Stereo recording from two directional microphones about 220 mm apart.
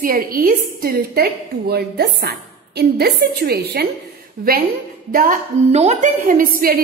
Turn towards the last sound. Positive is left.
turn(degrees=-40)  # may be behind; listen again after turning